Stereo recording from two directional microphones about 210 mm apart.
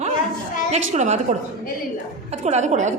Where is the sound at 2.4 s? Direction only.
30° right (ahead or behind).